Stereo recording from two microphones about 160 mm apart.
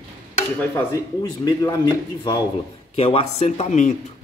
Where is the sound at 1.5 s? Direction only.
20° left (ahead or behind).